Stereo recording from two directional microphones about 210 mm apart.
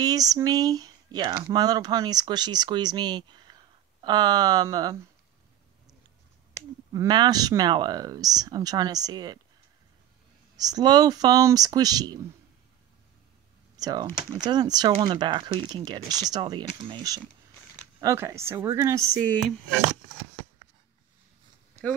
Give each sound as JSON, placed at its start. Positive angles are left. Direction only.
{"t": 0.0, "sound": "speech", "side_deg": -15}
{"t": 6.9, "sound": "speech", "side_deg": -20}
{"t": 10.5, "sound": "speech", "side_deg": -20}
{"t": 13.7, "sound": "speech", "side_deg": -20}